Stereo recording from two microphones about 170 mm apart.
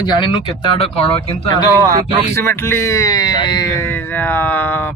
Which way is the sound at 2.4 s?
15° left (ahead or behind).